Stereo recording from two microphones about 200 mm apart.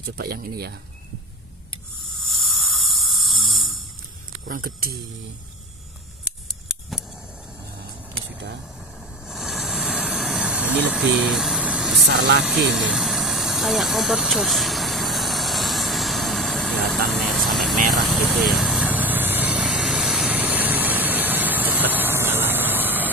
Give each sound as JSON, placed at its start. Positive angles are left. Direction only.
{"t": 0.0, "sound": "speech", "side_deg": -50}
{"t": 2.2, "sound": "a sound", "side_deg": 0}
{"t": 4.5, "sound": "speech", "side_deg": -45}
{"t": 6.2, "sound": "a sound", "side_deg": -5}
{"t": 9.3, "sound": "vehicle", "side_deg": 0}
{"t": 12.1, "sound": "speech", "side_deg": -55}
{"t": 12.4, "sound": "vehicle", "side_deg": 0}